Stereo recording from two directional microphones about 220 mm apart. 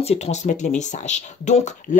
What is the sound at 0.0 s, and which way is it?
Speech, 30° left (ahead or behind).